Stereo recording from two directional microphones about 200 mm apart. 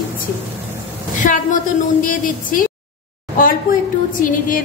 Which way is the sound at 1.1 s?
40° left (ahead or behind).